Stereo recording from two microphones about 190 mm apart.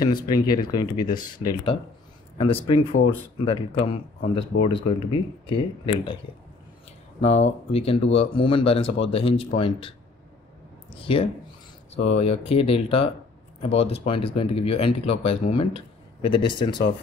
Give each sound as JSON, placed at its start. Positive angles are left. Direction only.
{"t": 0.0, "sound": "speech", "side_deg": 20}
{"t": 7.4, "sound": "speech", "side_deg": 30}